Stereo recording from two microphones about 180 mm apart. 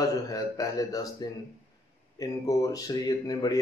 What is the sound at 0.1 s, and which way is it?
Speech, 20° left (ahead or behind).